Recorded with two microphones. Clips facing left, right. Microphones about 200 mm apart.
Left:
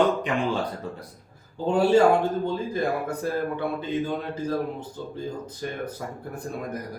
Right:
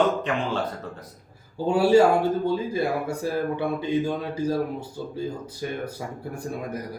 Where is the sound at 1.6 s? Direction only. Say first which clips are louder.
Right 1 dB; 10° right (ahead or behind).